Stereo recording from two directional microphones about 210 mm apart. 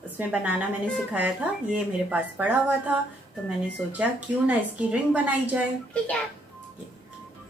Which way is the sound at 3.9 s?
5° right (ahead or behind).